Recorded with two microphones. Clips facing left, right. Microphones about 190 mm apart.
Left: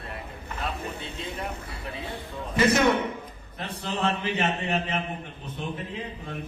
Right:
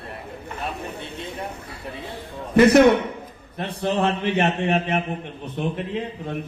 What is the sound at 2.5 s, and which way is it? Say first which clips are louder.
A man's voice: right 8 dB; 65° right (ahead or behind).